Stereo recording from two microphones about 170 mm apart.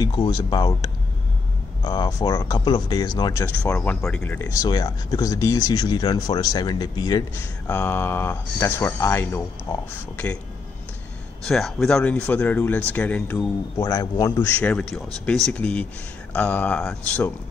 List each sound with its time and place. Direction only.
0.0 s speech: 25° left (ahead or behind)
1.9 s speech: 20° left (ahead or behind)
3.4 s speech: 10° left (ahead or behind)
11.4 s speech: centre (ahead or behind)
13.7 s speech: 20° left (ahead or behind)
14.6 s speech: 5° left (ahead or behind)